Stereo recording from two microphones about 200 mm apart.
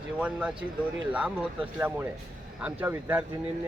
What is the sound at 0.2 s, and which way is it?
Speech, 5° right (ahead or behind).